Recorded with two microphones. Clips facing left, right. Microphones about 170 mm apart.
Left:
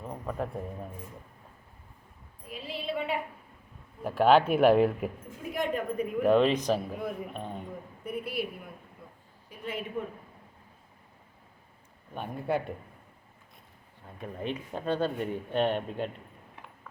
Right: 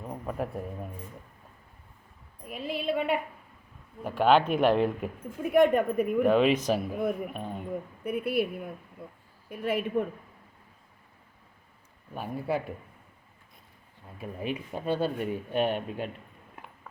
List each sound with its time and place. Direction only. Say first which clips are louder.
0.0 s speech: right 1 dB; 5° right (ahead or behind)
2.5 s a sound: right 5 dB; 50° right (ahead or behind)
4.0 s speech: left 1 dB; 5° left (ahead or behind)
5.4 s speech: right 10 dB; 60° right (ahead or behind)
6.0 s speech: left 1 dB; 5° right (ahead or behind)
8.0 s speech: right 5 dB; 55° right (ahead or behind)
9.5 s speech: right 8 dB; 60° right (ahead or behind)
12.1 s speech: even; 5° right (ahead or behind)
14.2 s speech: right 1 dB; 10° right (ahead or behind)